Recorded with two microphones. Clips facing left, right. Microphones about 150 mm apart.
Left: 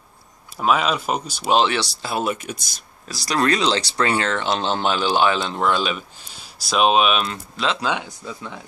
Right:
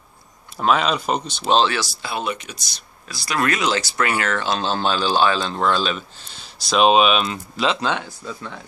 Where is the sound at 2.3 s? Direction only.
50° left (ahead or behind).